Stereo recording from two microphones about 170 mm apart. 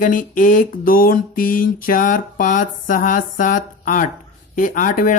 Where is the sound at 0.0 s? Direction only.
50° left (ahead or behind).